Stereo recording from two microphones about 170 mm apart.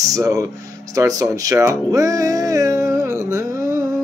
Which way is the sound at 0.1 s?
20° right (ahead or behind).